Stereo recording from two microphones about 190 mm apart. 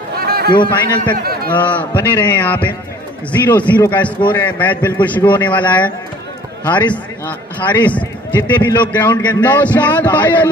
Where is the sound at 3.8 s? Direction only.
10° left (ahead or behind).